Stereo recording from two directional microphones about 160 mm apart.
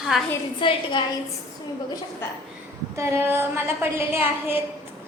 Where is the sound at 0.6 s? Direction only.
30° left (ahead or behind).